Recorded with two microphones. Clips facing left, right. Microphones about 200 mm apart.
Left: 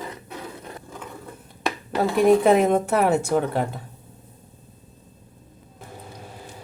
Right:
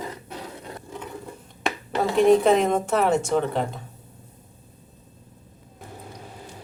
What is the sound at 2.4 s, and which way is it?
A woman's voice, 5° left (ahead or behind).